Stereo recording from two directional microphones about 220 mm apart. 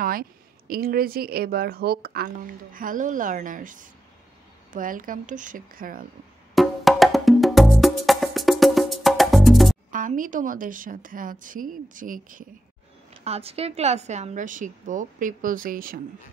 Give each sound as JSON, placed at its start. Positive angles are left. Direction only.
{"t": 0.0, "sound": "speech", "side_deg": -40}
{"t": 6.5, "sound": "music", "side_deg": 0}
{"t": 9.8, "sound": "speech", "side_deg": -35}
{"t": 13.2, "sound": "speech", "side_deg": -25}